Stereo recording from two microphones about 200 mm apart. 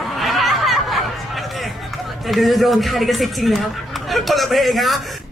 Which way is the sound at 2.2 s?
Centre (ahead or behind).